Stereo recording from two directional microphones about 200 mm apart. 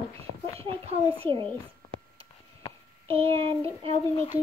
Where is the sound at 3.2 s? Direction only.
30° right (ahead or behind).